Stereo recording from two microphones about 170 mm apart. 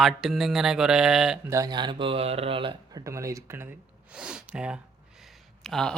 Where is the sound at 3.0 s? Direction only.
20° right (ahead or behind).